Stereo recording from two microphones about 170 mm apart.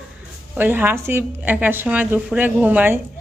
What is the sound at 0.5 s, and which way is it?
A woman's voice, 10° right (ahead or behind).